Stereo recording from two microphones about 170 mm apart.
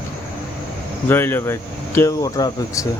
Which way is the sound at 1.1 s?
15° left (ahead or behind).